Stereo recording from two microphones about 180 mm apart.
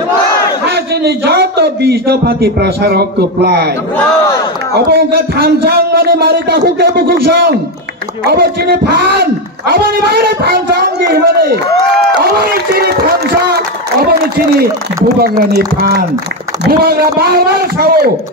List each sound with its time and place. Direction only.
0.7 s speech: 65° right (ahead or behind)
4.7 s speech: 60° right (ahead or behind)
15.2 s speech: 60° right (ahead or behind)